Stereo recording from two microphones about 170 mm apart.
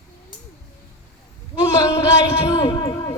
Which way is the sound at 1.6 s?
20° left (ahead or behind).